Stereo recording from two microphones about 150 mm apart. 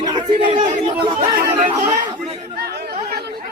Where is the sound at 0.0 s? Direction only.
30° right (ahead or behind).